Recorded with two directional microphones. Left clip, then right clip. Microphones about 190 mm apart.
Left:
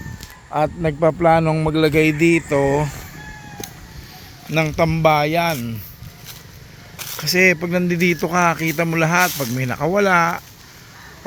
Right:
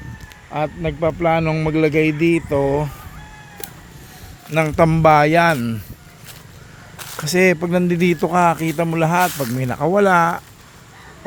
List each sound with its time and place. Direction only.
0.5 s a man's voice: 15° left (ahead or behind)
1.7 s speech: 10° right (ahead or behind)
4.5 s speech: 35° right (ahead or behind)
7.2 s speech: 25° right (ahead or behind)
9.2 s speech: centre (ahead or behind)
9.6 s speech: 15° right (ahead or behind)